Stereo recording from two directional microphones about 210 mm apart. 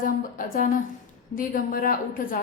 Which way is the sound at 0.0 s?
40° left (ahead or behind).